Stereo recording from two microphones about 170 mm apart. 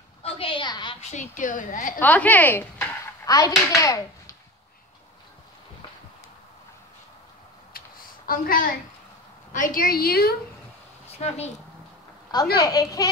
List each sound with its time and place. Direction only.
0.2 s a sound: 30° left (ahead or behind)
1.3 s a woman's voice: 50° left (ahead or behind)
2.0 s speech: 10° left (ahead or behind)
3.3 s a child's voice: 20° left (ahead or behind)
8.3 s a woman's voice: 55° left (ahead or behind)
11.1 s a woman's voice: 40° left (ahead or behind)
12.5 s speech: 20° left (ahead or behind)